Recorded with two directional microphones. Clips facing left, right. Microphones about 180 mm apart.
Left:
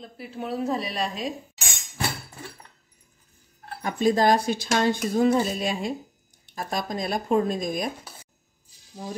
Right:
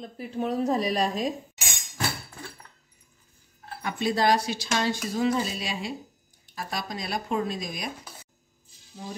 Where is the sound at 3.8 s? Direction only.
45° left (ahead or behind).